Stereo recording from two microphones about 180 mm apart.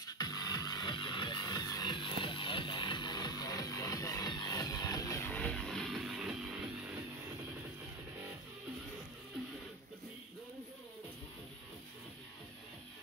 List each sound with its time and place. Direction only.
0.0 s music: 20° left (ahead or behind); by 6.3 s centre (ahead or behind)